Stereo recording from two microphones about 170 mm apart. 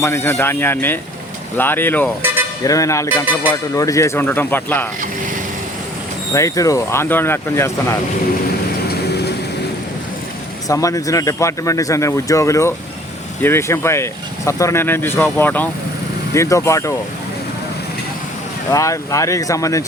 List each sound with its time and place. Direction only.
0.0 s speech: 15° left (ahead or behind)
6.3 s speech: 20° left (ahead or behind)
9.0 s vehicle: 75° left (ahead or behind)
10.7 s speech: 20° left (ahead or behind)
18.7 s speech: 20° left (ahead or behind)